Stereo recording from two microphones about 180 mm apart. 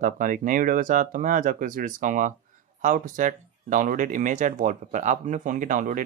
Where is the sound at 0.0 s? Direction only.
50° right (ahead or behind).